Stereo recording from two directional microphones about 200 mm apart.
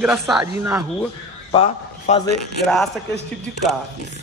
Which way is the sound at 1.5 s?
30° left (ahead or behind).